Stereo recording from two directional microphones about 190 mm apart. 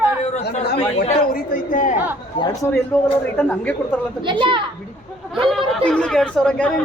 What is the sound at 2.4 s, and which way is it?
Speech, 15° left (ahead or behind).